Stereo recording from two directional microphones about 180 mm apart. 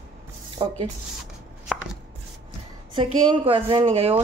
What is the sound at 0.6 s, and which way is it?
Speech, 25° right (ahead or behind).